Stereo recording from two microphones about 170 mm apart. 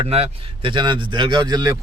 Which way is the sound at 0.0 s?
35° right (ahead or behind).